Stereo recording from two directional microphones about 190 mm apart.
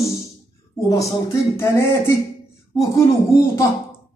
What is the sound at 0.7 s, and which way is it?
Speech, 15° left (ahead or behind).